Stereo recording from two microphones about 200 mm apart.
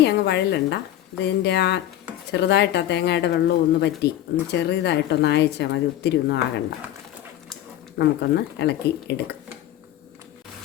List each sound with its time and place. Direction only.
0.0 s a woman's voice: 60° left (ahead or behind)
7.9 s a woman's voice: 55° left (ahead or behind)